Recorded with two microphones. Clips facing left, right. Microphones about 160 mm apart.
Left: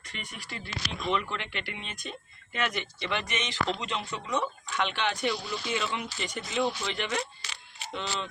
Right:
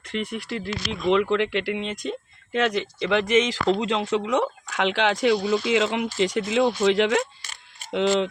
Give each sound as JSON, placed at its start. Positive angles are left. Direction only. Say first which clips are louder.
{"t": 0.1, "sound": "speech", "louder": "right 13 dB", "side_deg": -85}
{"t": 6.5, "sound": "speech", "louder": "right 8 dB", "side_deg": -70}